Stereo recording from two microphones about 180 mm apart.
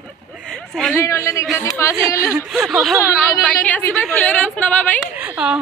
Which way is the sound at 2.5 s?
Centre (ahead or behind).